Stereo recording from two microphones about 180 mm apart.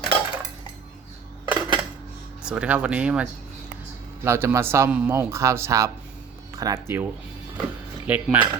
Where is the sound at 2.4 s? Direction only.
5° right (ahead or behind).